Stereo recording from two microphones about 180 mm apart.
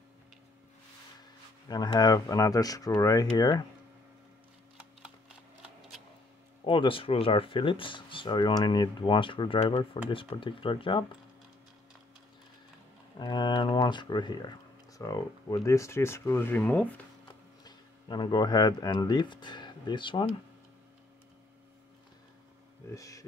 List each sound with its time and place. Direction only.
1.7 s speech: 20° left (ahead or behind)
6.6 s speech: 30° left (ahead or behind)
13.2 s speech: 25° left (ahead or behind)
17.6 s speech: 25° left (ahead or behind)
22.9 s speech: 20° left (ahead or behind)